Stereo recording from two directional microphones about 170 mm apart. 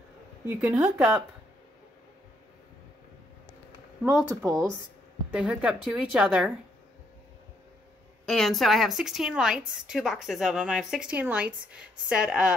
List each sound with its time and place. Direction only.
0.5 s a woman's voice: 5° right (ahead or behind)
4.0 s speech: 5° right (ahead or behind)
4.3 s speech: 15° right (ahead or behind)
5.3 s a woman's voice: 5° right (ahead or behind)
8.3 s a woman's voice: centre (ahead or behind)